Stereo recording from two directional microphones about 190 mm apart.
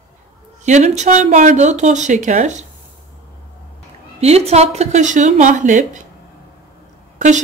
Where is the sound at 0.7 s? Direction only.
40° right (ahead or behind).